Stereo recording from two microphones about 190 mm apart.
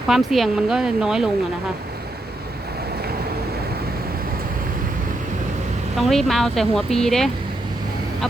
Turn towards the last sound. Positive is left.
turn(degrees=0)  # may be behind; listen again after turning